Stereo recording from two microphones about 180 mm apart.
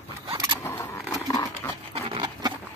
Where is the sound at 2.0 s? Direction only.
30° right (ahead or behind).